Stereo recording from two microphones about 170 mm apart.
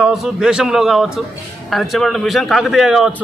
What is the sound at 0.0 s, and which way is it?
A man's voice, centre (ahead or behind).